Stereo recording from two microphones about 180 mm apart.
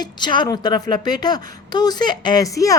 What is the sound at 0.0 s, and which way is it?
A woman's voice, 25° left (ahead or behind).